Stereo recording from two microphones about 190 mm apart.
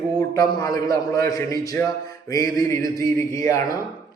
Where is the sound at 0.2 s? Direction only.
20° left (ahead or behind).